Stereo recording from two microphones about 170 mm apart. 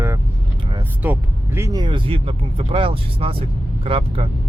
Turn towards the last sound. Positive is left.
turn(degrees=-35)  # may be behind; listen again after turning